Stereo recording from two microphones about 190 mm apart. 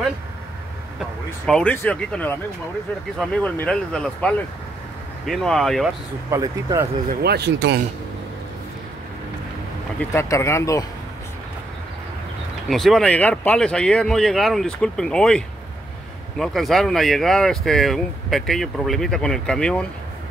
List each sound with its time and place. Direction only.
1.4 s speech: 5° left (ahead or behind)
6.3 s speech: 15° right (ahead or behind)
7.1 s speech: 60° right (ahead or behind)
9.9 s speech: 15° left (ahead or behind)
12.6 s speech: centre (ahead or behind)